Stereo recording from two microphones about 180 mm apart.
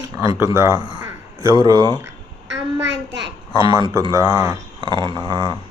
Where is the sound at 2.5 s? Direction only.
80° right.